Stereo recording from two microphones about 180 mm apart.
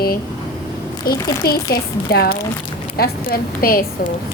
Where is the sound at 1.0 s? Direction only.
60° left (ahead or behind).